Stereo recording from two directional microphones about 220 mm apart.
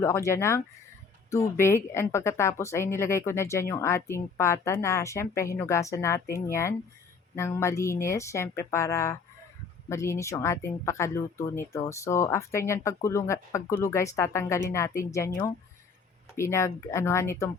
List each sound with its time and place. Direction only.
0.0 s speech: 10° left (ahead or behind)